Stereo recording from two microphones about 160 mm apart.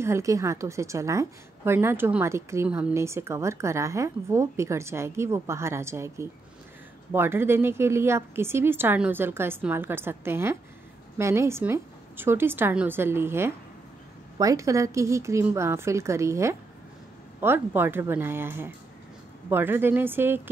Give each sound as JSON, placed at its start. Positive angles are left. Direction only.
{"t": 0.0, "sound": "a woman's voice", "side_deg": -20}